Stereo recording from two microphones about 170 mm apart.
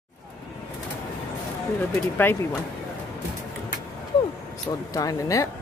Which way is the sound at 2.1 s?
10° left (ahead or behind).